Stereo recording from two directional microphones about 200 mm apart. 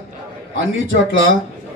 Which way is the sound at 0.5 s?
75° right (ahead or behind).